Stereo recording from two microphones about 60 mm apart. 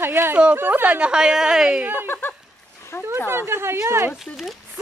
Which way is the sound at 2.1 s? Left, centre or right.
Left.